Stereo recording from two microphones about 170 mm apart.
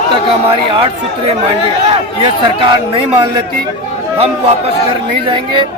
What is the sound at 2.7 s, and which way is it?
Speech, 30° right (ahead or behind).